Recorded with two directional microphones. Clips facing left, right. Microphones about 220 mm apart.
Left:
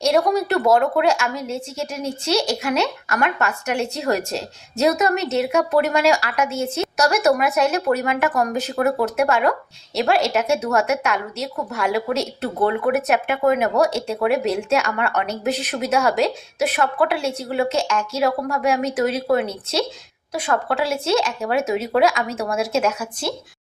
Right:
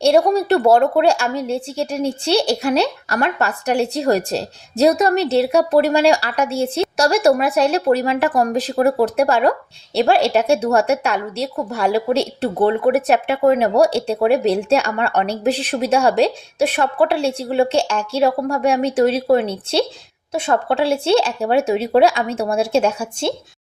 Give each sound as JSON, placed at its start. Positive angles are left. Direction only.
{"t": 0.0, "sound": "a woman's voice", "side_deg": -30}